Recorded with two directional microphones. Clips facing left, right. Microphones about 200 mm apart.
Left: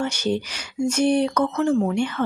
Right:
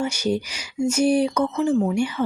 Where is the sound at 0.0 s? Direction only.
10° right (ahead or behind).